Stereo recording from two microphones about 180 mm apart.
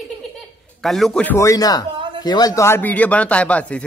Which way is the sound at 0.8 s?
Centre (ahead or behind).